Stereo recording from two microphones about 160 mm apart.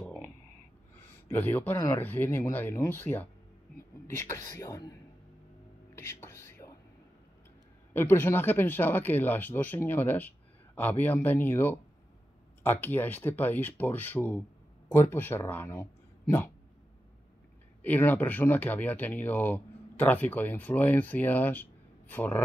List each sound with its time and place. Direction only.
0.0 s a sound: 5° left (ahead or behind)
1.3 s speech: 10° left (ahead or behind)
4.3 s speech: 20° left (ahead or behind)
5.9 s whispering: 15° left (ahead or behind)
7.9 s speech: 15° left (ahead or behind)
17.8 s speech: 10° left (ahead or behind)